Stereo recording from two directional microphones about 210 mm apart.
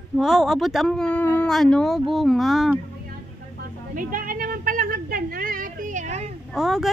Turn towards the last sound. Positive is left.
turn(degrees=0)  # may be behind; listen again after turning